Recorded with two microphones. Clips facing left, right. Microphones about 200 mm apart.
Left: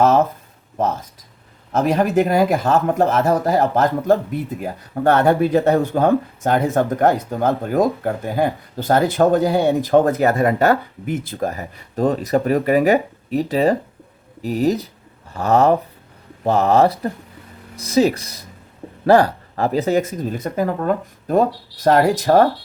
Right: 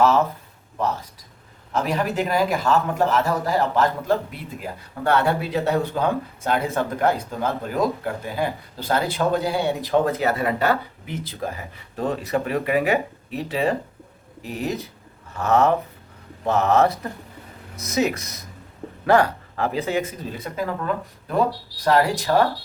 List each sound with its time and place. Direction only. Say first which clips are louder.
0.0 s speech: left 3 dB; 20° left (ahead or behind)
1.7 s speech: left 7 dB; 50° left (ahead or behind)